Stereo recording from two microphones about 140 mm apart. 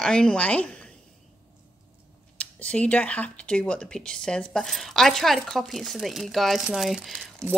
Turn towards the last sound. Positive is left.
turn(degrees=0)  # may be behind; listen again after turning